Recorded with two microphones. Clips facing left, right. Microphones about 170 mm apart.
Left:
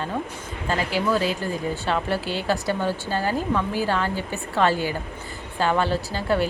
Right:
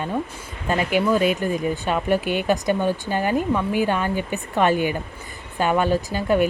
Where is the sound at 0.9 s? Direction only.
20° right (ahead or behind).